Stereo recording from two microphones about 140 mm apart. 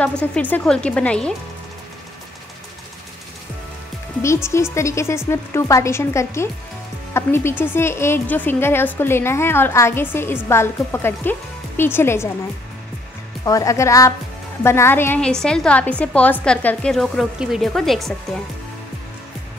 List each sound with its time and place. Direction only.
0.2 s a woman's voice: 10° left (ahead or behind)
4.2 s a woman's voice: 20° left (ahead or behind)
13.5 s a woman's voice: 25° left (ahead or behind); by 18.1 s centre (ahead or behind)